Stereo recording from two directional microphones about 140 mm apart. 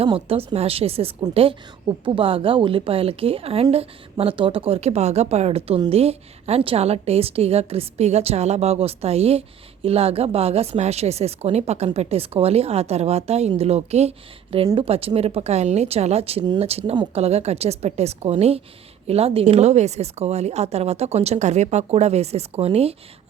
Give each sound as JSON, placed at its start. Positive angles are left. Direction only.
{"t": 0.0, "sound": "a woman's voice", "side_deg": -45}